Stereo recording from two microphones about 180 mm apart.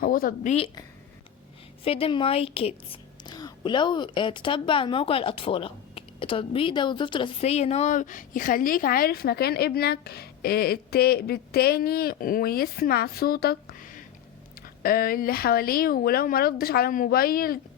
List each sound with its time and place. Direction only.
0.0 s a woman's voice: 55° left (ahead or behind)
1.8 s a woman's voice: 30° left (ahead or behind); by 17.6 s 55° left (ahead or behind)